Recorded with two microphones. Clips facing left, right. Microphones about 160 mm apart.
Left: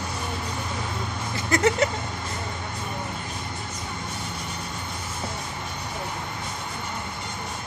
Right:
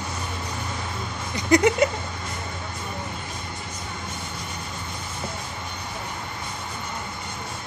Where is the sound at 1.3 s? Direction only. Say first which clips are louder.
Right 4 dB; 20° right (ahead or behind).